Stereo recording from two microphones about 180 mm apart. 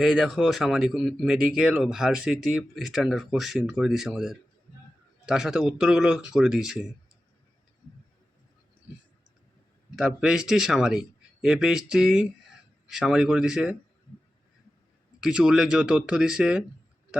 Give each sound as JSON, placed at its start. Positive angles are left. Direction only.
{"t": 0.0, "sound": "speech", "side_deg": 0}
{"t": 9.9, "sound": "speech", "side_deg": -5}
{"t": 15.2, "sound": "speech", "side_deg": -5}